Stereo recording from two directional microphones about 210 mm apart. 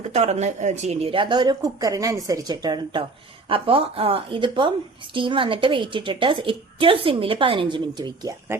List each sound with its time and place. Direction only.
0.1 s a woman's voice: 30° right (ahead or behind)